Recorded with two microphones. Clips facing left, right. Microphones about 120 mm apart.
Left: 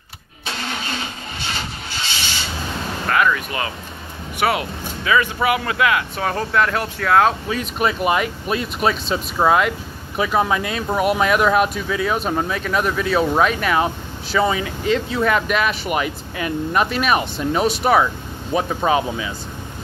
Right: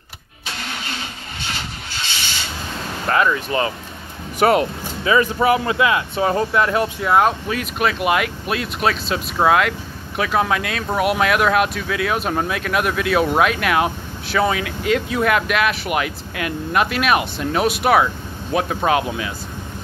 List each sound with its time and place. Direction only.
3.1 s speech: 30° right (ahead or behind); by 7.3 s 10° right (ahead or behind)
8.0 s speech: centre (ahead or behind)